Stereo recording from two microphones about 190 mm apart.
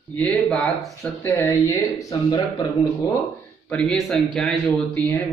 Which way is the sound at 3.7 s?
5° left (ahead or behind).